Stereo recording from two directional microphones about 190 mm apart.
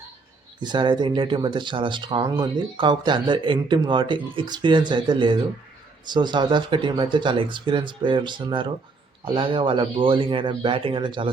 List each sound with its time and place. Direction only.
0.6 s speech: 25° right (ahead or behind)